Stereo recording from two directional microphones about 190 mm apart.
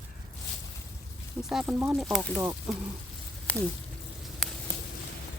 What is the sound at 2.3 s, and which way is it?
Speech, 20° right (ahead or behind).